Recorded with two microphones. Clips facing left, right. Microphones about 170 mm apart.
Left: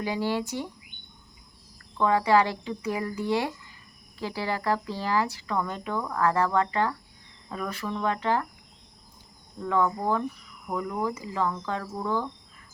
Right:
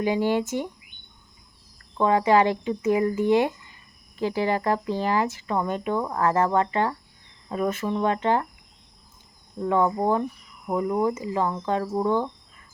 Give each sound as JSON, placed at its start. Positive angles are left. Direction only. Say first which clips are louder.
{"t": 0.0, "sound": "speech", "louder": "right 5 dB", "side_deg": -20}
{"t": 2.0, "sound": "speech", "louder": "right 3 dB", "side_deg": -20}
{"t": 9.6, "sound": "speech", "louder": "right 4 dB", "side_deg": -20}